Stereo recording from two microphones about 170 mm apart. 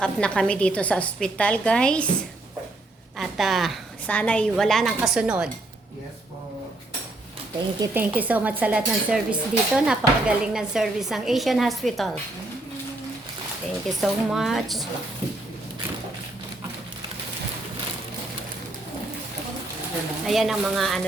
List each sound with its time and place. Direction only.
0.0 s a woman's voice: 5° left (ahead or behind)
3.2 s speech: centre (ahead or behind)
7.8 s speech: 10° right (ahead or behind)
14.0 s speech: centre (ahead or behind)
20.2 s speech: centre (ahead or behind)